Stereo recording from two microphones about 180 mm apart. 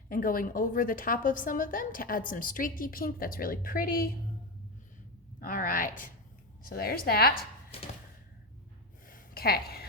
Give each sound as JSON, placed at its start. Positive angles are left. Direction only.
{"t": 0.1, "sound": "a woman's voice", "side_deg": 50}
{"t": 5.4, "sound": "a woman's voice", "side_deg": 50}
{"t": 9.0, "sound": "a sound", "side_deg": 55}